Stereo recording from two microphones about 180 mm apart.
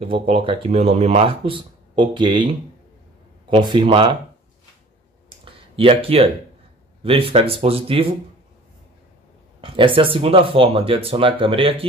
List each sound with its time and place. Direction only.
0.0 s speech: 30° right (ahead or behind)
3.4 s speech: 25° right (ahead or behind)
5.4 s a sound: 30° right (ahead or behind)
7.0 s speech: 30° right (ahead or behind)
9.6 s speech: 30° right (ahead or behind)